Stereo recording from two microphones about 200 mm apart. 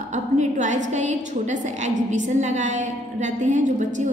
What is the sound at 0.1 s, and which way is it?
A woman's voice, 35° right (ahead or behind).